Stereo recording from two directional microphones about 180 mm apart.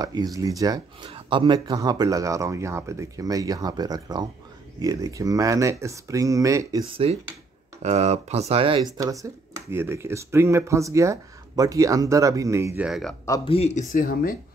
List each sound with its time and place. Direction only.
0.0 s speech: 20° right (ahead or behind)
7.0 s speech: 35° right (ahead or behind)
8.9 s speech: 20° right (ahead or behind)
13.5 s speech: 35° left (ahead or behind)